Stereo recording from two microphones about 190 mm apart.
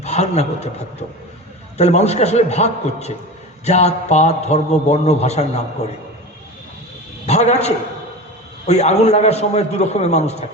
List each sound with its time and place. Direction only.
0.0 s a man's voice: 35° left (ahead or behind)
1.8 s a man's voice: 35° left (ahead or behind)
7.3 s a man's voice: 35° left (ahead or behind)